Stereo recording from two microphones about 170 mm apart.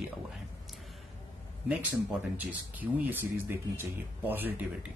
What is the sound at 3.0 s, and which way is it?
Speech, 10° right (ahead or behind).